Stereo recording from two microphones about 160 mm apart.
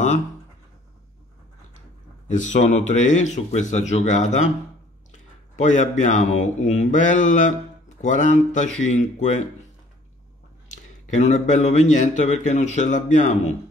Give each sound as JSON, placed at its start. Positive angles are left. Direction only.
{"t": 2.3, "sound": "a man's voice", "side_deg": 50}
{"t": 5.6, "sound": "a man's voice", "side_deg": 50}
{"t": 10.7, "sound": "a man's voice", "side_deg": 45}